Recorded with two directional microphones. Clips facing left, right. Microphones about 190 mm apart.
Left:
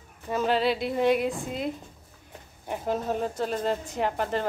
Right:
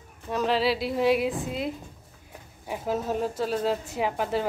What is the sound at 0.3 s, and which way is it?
A woman's voice, centre (ahead or behind).